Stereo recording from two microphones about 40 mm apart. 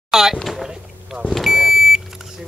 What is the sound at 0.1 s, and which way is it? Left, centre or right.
Speech, centre.